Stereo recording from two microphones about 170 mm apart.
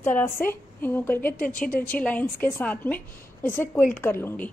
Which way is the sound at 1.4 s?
60° left (ahead or behind).